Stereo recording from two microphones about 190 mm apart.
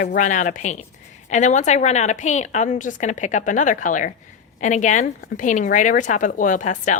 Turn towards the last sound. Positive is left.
turn(degrees=40)  # may be behind; listen again after turning